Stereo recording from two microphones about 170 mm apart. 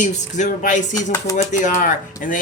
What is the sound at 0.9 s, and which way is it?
Speech, 20° left (ahead or behind).